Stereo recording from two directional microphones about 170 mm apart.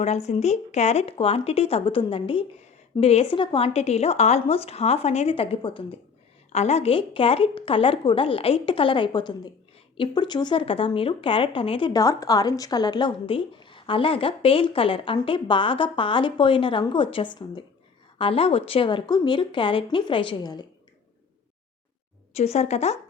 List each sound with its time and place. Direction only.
0.3 s a woman's voice: 40° left (ahead or behind); by 20.7 s 25° left (ahead or behind)
22.4 s a woman's voice: 40° left (ahead or behind)